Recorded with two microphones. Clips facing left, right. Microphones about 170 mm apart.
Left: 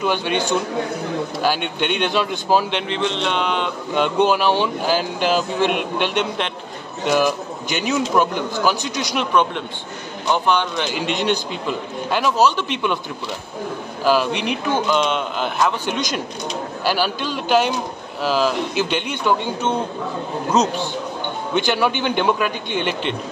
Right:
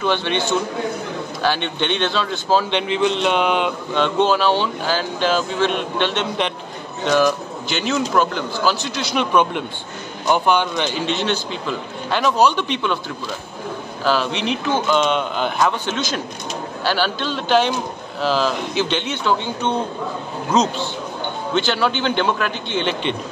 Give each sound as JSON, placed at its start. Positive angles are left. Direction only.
{"t": 0.0, "sound": "speech", "side_deg": 10}
{"t": 2.9, "sound": "mantra", "side_deg": -5}
{"t": 3.9, "sound": "speech", "side_deg": 10}
{"t": 9.1, "sound": "mantra", "side_deg": -5}
{"t": 11.0, "sound": "speech", "side_deg": 15}
{"t": 14.0, "sound": "a man's voice", "side_deg": 10}
{"t": 15.9, "sound": "speech", "side_deg": 15}
{"t": 21.5, "sound": "speech", "side_deg": 15}